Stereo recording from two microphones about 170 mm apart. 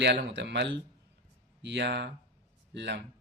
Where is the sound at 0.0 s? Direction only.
85° right.